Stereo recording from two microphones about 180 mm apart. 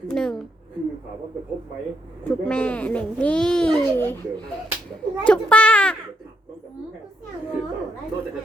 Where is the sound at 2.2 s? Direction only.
5° left (ahead or behind).